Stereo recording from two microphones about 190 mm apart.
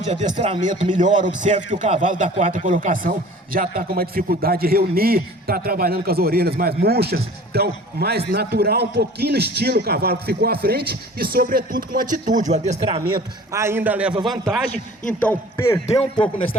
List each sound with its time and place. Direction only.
0.0 s a man's voice: 35° right (ahead or behind)
13.5 s a man's voice: 15° right (ahead or behind)
15.2 s a man's voice: 10° left (ahead or behind)
15.9 s a man's voice: 30° left (ahead or behind)